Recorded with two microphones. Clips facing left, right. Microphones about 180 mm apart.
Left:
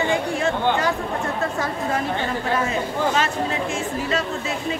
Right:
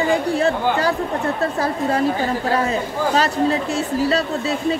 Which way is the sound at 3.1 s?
35° right (ahead or behind).